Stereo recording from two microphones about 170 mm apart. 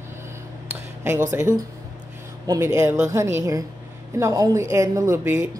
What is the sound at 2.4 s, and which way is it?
A woman's voice, 20° right (ahead or behind).